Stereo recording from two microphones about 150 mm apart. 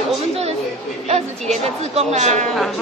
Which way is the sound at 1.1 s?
45° right (ahead or behind).